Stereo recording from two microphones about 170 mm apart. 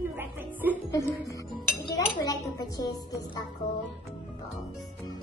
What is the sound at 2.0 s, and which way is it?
Speech, 20° left (ahead or behind).